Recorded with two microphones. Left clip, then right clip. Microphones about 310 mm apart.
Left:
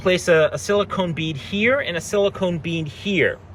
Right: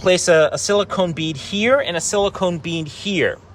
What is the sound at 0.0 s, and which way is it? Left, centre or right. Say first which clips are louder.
Speech: right 3 dB; centre.